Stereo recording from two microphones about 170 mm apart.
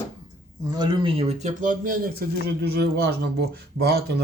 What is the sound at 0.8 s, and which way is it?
Speech, 35° right (ahead or behind).